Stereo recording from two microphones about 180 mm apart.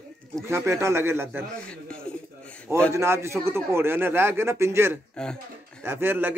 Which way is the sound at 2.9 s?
15° right (ahead or behind).